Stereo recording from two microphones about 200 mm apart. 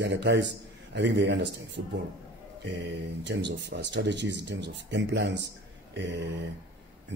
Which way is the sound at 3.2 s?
60° right (ahead or behind).